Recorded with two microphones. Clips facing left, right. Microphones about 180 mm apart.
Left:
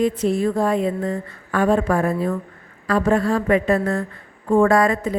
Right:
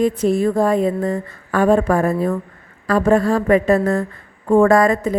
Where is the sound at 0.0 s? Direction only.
45° right (ahead or behind).